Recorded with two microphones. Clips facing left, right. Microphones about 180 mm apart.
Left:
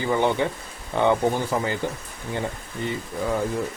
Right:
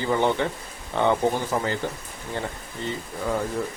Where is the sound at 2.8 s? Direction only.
15° left (ahead or behind).